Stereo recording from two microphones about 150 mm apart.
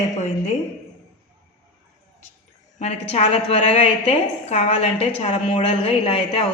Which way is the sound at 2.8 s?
45° left (ahead or behind).